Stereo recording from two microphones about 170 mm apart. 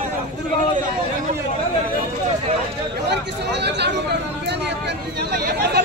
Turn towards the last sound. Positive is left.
turn(degrees=-60)  # may be behind; listen again after turning